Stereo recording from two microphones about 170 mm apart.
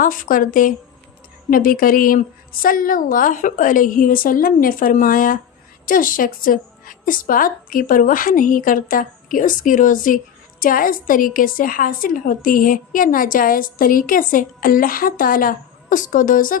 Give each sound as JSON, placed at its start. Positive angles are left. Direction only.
{"t": 0.0, "sound": "a woman's voice", "side_deg": 55}